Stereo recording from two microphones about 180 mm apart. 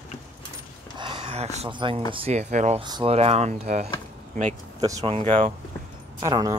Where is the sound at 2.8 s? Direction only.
25° right (ahead or behind).